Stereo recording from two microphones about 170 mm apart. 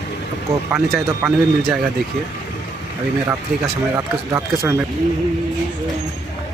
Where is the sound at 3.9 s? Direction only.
15° right (ahead or behind).